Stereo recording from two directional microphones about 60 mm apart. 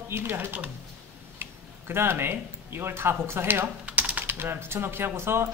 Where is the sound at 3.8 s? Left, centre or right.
Right.